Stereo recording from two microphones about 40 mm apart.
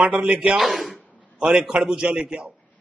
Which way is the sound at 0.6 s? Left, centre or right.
Centre.